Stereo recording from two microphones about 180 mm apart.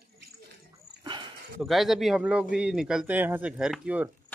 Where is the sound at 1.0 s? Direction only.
25° right (ahead or behind).